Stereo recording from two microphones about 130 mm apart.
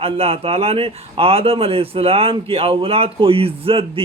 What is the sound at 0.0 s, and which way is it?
Speech, 50° right (ahead or behind).